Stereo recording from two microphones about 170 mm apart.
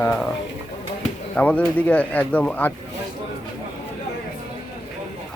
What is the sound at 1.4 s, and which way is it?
Speech, 10° left (ahead or behind).